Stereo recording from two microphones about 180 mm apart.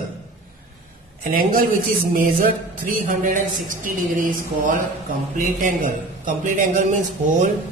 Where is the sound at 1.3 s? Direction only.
50° right (ahead or behind).